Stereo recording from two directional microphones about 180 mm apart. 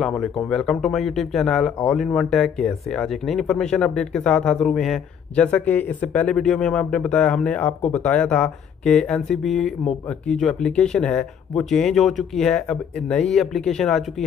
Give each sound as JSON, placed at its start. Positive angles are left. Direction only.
{"t": 0.0, "sound": "speech", "side_deg": 0}